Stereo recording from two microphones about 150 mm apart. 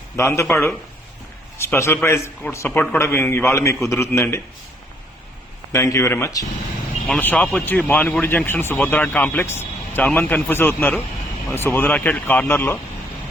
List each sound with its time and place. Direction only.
0.2 s speech: 15° left (ahead or behind)
5.7 s speech: 20° left (ahead or behind)